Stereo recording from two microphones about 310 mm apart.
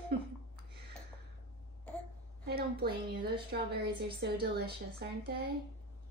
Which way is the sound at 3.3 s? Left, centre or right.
Right.